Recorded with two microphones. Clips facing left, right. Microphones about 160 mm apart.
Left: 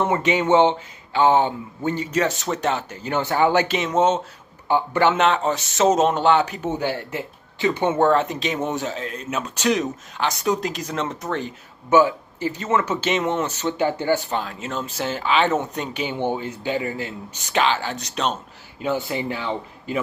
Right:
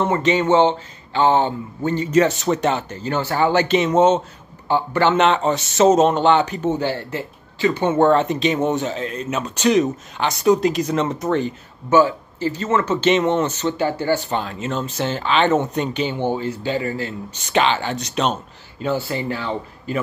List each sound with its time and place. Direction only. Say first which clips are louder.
0.0 s speech: right 2 dB; 10° left (ahead or behind)
2.0 s speech: right 9 dB; centre (ahead or behind)
3.0 s speech: left 2 dB; 15° left (ahead or behind)
3.6 s speech: right 4 dB; centre (ahead or behind)
4.6 s speech: right 1 dB; 15° left (ahead or behind)
5.1 s speech: right 3 dB; centre (ahead or behind)
8.0 s speech: right 4 dB; centre (ahead or behind)
11.9 s speech: right 1 dB; 15° left (ahead or behind)
14.3 s speech: right 3 dB; centre (ahead or behind)
17.5 s speech: right 2 dB; centre (ahead or behind)
18.8 s speech: right 2 dB; 15° left (ahead or behind)